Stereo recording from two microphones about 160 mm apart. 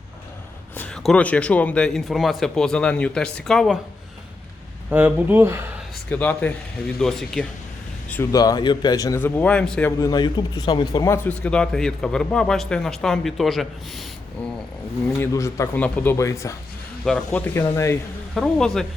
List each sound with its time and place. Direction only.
0.8 s speech: 5° left (ahead or behind)
4.9 s speech: 10° right (ahead or behind)
6.1 s speech: 10° left (ahead or behind)
8.1 s speech: 20° left (ahead or behind)
10.0 s speech: 25° left (ahead or behind); by 14.0 s centre (ahead or behind)
15.2 s speech: 15° left (ahead or behind)
17.0 s speech: 5° left (ahead or behind)